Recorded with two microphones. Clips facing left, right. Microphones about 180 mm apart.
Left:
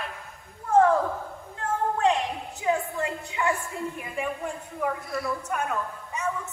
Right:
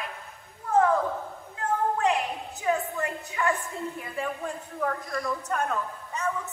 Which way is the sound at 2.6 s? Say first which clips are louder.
Left 1 dB; 15° left (ahead or behind).